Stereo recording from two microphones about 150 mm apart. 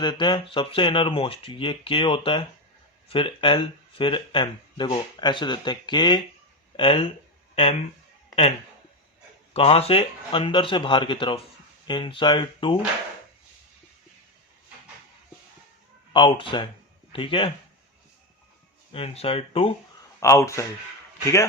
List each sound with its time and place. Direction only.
0.0 s speech: 30° left (ahead or behind)
9.5 s speech: 40° left (ahead or behind)
16.1 s speech: 35° left (ahead or behind)
18.9 s speech: 40° left (ahead or behind)
20.1 s speech: 20° left (ahead or behind)